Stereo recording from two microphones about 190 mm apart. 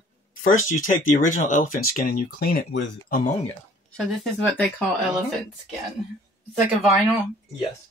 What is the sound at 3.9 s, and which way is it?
Speech, 5° left (ahead or behind).